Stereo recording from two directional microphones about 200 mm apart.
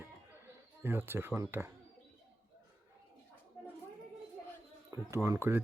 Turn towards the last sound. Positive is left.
turn(degrees=-10)  # may be behind; listen again after turning